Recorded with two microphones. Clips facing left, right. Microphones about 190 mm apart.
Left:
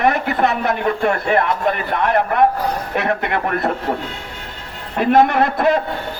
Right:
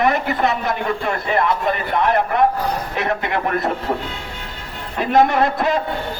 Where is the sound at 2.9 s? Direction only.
55° left (ahead or behind).